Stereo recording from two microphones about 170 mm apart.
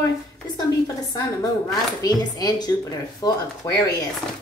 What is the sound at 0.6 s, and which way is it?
A woman's voice, 20° left (ahead or behind).